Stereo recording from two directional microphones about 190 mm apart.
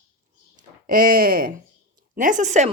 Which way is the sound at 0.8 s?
50° right (ahead or behind).